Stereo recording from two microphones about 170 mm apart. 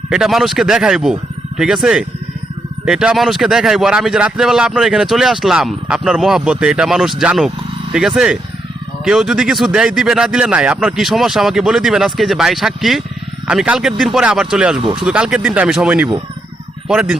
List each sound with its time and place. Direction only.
0.1 s a man's voice: centre (ahead or behind)
14.8 s speech: 30° right (ahead or behind)
15.0 s a man's voice: 5° right (ahead or behind)